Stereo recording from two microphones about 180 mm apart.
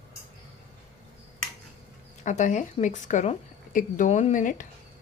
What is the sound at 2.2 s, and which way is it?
A woman's voice, 40° left (ahead or behind).